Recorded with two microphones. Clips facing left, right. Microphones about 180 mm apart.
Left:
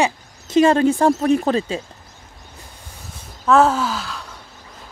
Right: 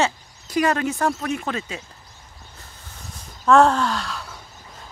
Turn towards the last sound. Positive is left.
turn(degrees=0)  # may be behind; listen again after turning